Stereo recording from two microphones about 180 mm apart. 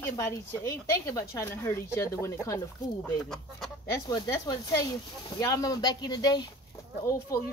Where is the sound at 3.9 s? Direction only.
20° left (ahead or behind).